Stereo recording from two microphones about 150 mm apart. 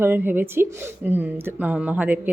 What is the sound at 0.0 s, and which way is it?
A woman's voice, 15° right (ahead or behind).